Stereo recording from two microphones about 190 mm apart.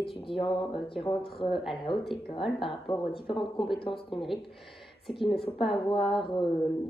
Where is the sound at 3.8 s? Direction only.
25° left (ahead or behind).